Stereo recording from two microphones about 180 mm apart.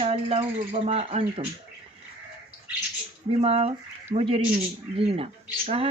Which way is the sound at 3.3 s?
35° right (ahead or behind).